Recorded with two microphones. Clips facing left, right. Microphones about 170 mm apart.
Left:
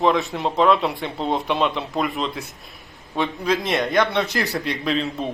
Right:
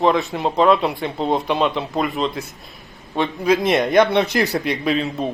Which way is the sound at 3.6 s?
20° right (ahead or behind).